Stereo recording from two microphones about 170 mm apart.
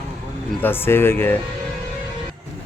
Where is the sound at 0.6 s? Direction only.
10° left (ahead or behind).